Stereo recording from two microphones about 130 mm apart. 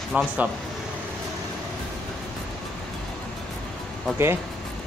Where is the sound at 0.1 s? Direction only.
5° right (ahead or behind).